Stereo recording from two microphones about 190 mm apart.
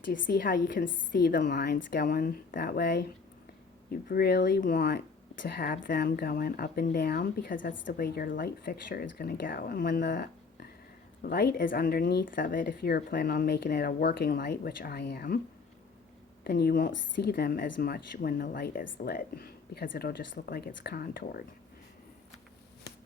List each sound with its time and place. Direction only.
0.0 s speech: 50° left (ahead or behind)
1.7 s speech: 50° left (ahead or behind)
11.2 s speech: 55° left (ahead or behind)
16.4 s speech: 55° left (ahead or behind)